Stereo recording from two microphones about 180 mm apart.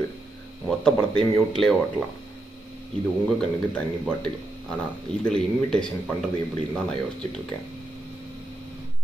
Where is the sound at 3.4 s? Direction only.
5° left (ahead or behind).